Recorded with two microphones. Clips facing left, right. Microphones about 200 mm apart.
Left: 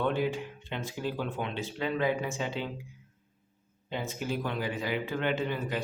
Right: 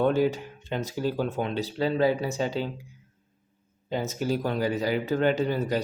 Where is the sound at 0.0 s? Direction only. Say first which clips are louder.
Right 6 dB; 40° right (ahead or behind).